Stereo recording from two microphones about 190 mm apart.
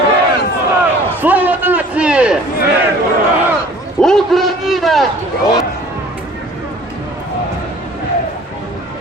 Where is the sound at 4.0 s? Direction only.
Centre (ahead or behind).